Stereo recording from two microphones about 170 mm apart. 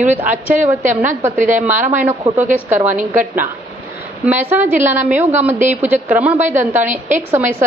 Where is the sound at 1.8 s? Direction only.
45° right (ahead or behind).